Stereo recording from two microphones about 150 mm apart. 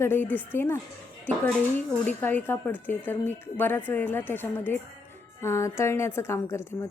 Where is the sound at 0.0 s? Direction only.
15° left (ahead or behind).